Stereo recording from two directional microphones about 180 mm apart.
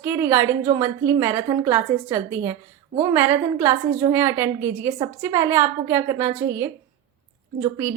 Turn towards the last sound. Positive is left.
turn(degrees=-15)  # may be behind; listen again after turning